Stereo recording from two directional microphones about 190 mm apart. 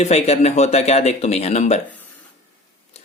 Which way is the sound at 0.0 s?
35° left (ahead or behind).